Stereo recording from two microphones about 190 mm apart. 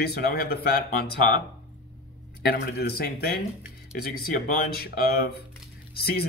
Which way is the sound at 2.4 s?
55° left (ahead or behind).